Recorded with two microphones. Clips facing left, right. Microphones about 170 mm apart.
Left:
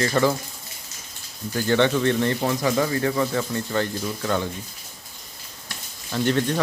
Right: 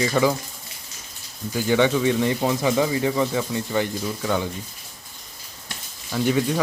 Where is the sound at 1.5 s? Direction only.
10° right (ahead or behind).